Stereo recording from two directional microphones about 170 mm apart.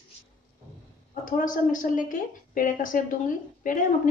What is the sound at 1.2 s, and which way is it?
Speech, 50° left (ahead or behind).